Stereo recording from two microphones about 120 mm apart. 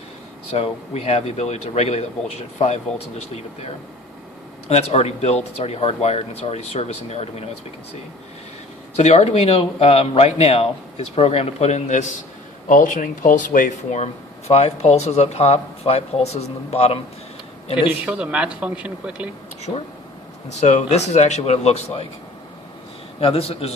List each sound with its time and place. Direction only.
0.5 s speech: 60° left (ahead or behind)
9.0 s speech: 60° left (ahead or behind)
12.6 s speech: 90° left; by 17.0 s 60° left (ahead or behind)
18.0 s speech: 10° right (ahead or behind)
20.6 s a man's voice: 80° left; by 22.0 s 65° left (ahead or behind)
23.2 s speech: 55° left (ahead or behind)